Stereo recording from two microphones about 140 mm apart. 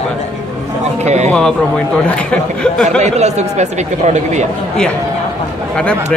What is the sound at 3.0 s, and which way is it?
Speech, 55° right (ahead or behind).